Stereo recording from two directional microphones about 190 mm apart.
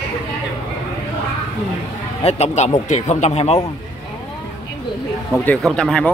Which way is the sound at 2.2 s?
35° left (ahead or behind).